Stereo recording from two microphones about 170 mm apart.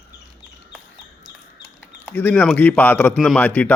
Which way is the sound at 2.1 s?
10° left (ahead or behind).